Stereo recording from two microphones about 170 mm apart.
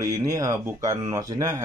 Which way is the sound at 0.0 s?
20° right (ahead or behind).